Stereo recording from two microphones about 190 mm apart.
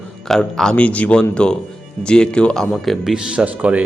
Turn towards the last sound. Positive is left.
turn(degrees=-5)  # may be behind; listen again after turning